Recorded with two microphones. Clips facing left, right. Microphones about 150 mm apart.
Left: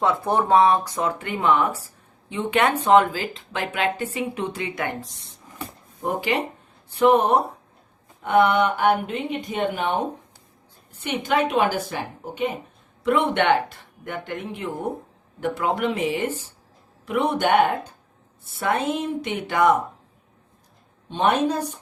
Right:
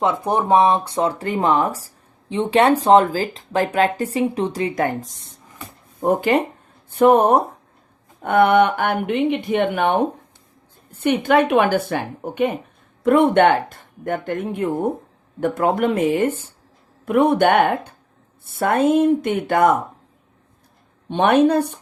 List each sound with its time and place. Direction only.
0.0 s speech: 20° right (ahead or behind); by 19.7 s 50° right (ahead or behind)
21.1 s speech: 60° right (ahead or behind)